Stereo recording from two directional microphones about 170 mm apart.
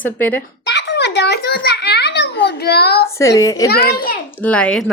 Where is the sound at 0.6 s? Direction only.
85° left; by 3.1 s 70° left (ahead or behind).